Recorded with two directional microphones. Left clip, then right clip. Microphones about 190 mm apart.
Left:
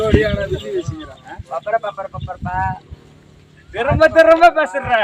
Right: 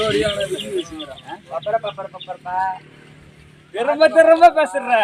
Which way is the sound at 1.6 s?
15° right (ahead or behind).